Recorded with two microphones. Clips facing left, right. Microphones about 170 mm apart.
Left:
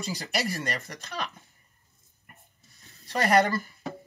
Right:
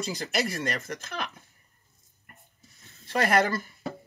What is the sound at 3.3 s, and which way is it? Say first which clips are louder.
Speech: left 5 dB; centre (ahead or behind).